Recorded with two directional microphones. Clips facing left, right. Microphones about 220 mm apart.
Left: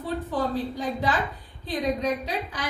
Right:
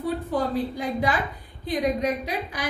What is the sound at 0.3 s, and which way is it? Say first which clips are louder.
A woman's voice: right 1 dB; 10° right (ahead or behind).